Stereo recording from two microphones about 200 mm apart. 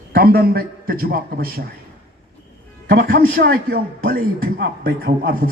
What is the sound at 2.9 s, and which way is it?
A man's voice, 50° right (ahead or behind).